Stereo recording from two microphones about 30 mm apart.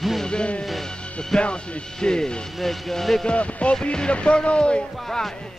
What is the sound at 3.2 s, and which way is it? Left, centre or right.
Speech, left.